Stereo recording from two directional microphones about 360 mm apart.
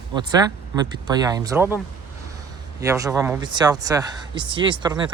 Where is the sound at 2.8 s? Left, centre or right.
Centre.